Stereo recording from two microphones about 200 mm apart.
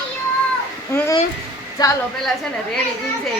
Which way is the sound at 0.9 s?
15° left (ahead or behind).